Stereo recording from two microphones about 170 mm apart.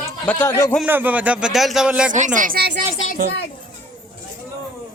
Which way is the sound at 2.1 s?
50° right (ahead or behind).